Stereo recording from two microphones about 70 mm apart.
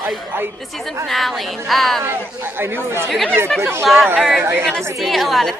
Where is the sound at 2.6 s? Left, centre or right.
Right.